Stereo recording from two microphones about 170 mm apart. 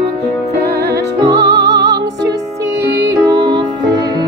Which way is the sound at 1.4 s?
80° right.